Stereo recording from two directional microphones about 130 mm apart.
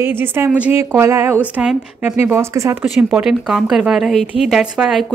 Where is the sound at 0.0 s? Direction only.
15° right (ahead or behind).